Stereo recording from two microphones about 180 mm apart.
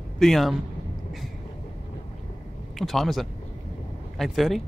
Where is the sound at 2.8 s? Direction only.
Centre (ahead or behind).